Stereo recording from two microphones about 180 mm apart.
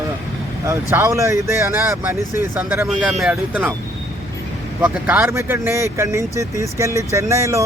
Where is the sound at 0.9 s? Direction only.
15° right (ahead or behind).